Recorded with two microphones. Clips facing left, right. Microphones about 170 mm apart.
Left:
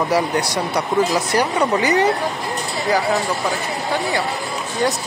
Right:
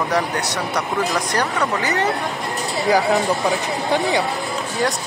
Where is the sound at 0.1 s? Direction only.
10° left (ahead or behind).